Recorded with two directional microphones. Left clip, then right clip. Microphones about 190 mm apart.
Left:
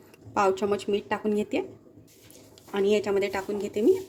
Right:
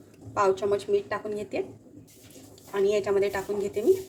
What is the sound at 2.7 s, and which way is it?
A woman's voice, 50° left (ahead or behind).